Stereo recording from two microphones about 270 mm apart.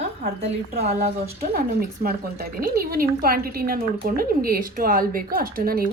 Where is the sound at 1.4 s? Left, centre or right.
Right.